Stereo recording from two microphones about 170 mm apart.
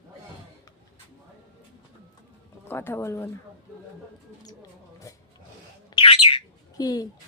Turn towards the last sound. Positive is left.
turn(degrees=20)  # may be behind; listen again after turning